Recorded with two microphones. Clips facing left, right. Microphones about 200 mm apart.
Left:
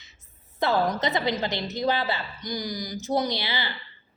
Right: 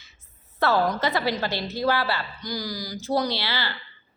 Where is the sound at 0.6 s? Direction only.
20° left (ahead or behind).